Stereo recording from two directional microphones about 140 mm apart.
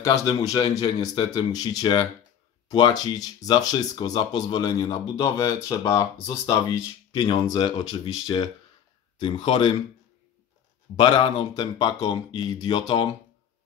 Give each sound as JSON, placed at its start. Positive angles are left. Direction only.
{"t": 0.0, "sound": "speech", "side_deg": 25}
{"t": 11.0, "sound": "speech", "side_deg": 35}